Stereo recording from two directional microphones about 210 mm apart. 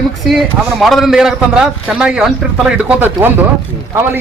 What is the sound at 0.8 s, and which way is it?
A man's voice, centre (ahead or behind).